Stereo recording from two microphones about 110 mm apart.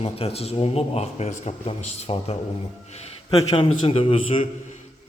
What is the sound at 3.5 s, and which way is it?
Speech, 60° left (ahead or behind).